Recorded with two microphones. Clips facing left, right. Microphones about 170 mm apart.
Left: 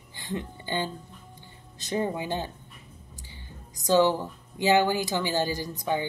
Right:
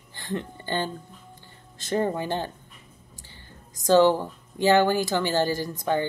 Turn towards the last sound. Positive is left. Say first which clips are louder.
# right 3 dB
turn(degrees=15)  # may be behind; listen again after turning